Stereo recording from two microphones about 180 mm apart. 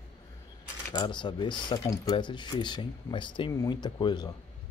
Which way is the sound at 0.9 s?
25° left (ahead or behind).